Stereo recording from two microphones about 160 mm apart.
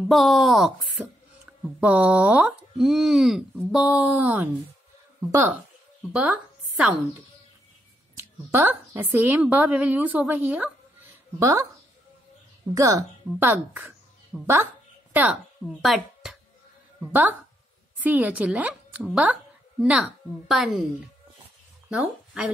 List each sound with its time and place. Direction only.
0.1 s a woman's voice: centre (ahead or behind)
8.2 s speech: 15° right (ahead or behind)
12.7 s a woman's voice: 20° right (ahead or behind)
15.8 s a woman's voice: centre (ahead or behind)
21.8 s speech: 5° right (ahead or behind)